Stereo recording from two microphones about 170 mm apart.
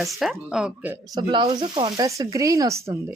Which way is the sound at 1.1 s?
25° right (ahead or behind).